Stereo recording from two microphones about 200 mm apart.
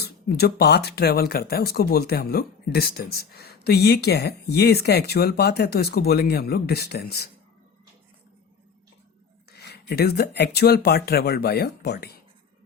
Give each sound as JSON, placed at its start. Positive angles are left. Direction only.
{"t": 0.0, "sound": "speech", "side_deg": 55}
{"t": 9.5, "sound": "speech", "side_deg": 55}